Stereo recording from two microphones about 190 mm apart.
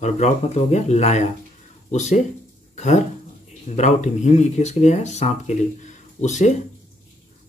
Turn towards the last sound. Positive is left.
turn(degrees=40)  # may be behind; listen again after turning